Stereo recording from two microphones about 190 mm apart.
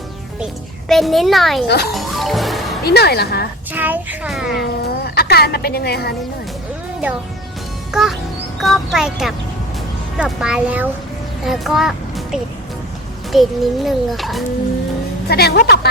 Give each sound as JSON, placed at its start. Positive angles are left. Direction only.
{"t": 0.9, "sound": "a child's voice", "side_deg": 0}
{"t": 1.6, "sound": "speech", "side_deg": 60}
{"t": 1.9, "sound": "music", "side_deg": 0}
{"t": 2.8, "sound": "speech", "side_deg": 60}
{"t": 3.7, "sound": "speech", "side_deg": -10}
{"t": 4.6, "sound": "a woman's voice", "side_deg": 55}
{"t": 7.9, "sound": "a child's voice", "side_deg": -5}
{"t": 15.3, "sound": "speech", "side_deg": 55}